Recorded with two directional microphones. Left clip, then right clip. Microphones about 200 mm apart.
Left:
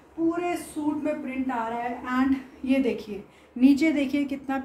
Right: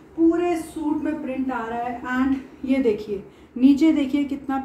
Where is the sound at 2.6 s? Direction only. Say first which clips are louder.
Right 4 dB; 20° left (ahead or behind).